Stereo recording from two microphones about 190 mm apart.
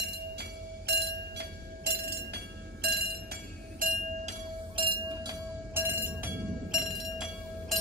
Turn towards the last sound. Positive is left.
turn(degrees=-5)  # may be behind; listen again after turning